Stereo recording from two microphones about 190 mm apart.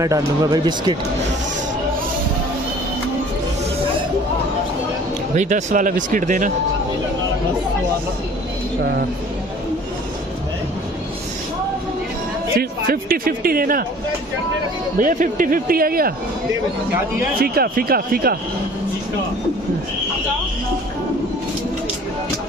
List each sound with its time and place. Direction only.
0.0 s speech: 20° right (ahead or behind)
5.3 s speech: 40° right (ahead or behind)
12.5 s speech: 50° right (ahead or behind)
15.0 s speech: 45° right (ahead or behind)
17.4 s speech: 50° right (ahead or behind)